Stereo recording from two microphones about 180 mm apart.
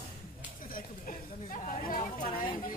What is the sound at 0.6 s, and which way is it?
Speech, 50° left (ahead or behind).